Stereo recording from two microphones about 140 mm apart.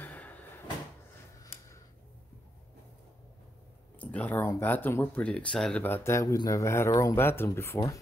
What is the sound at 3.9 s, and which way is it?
Speech, 10° left (ahead or behind).